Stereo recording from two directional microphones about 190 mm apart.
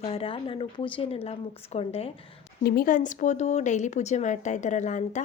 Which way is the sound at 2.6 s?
55° left (ahead or behind).